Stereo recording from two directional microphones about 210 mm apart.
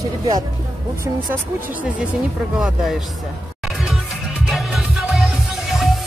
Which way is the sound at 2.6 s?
Centre (ahead or behind).